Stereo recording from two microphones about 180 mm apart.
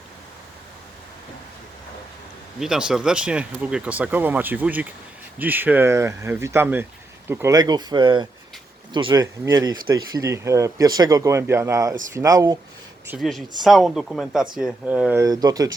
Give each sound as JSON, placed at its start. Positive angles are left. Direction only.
{"t": 2.6, "sound": "speech", "side_deg": -5}
{"t": 13.1, "sound": "speech", "side_deg": 0}